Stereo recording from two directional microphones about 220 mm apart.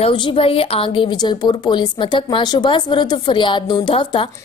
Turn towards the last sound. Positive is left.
turn(degrees=25)  # may be behind; listen again after turning